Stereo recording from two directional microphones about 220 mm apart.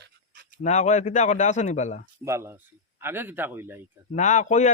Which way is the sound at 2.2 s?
10° right (ahead or behind).